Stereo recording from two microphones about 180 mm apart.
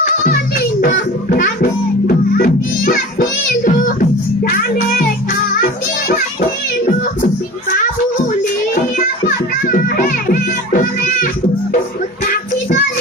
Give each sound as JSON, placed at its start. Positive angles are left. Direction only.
{"t": 1.3, "sound": "music", "side_deg": 50}
{"t": 8.7, "sound": "music", "side_deg": 50}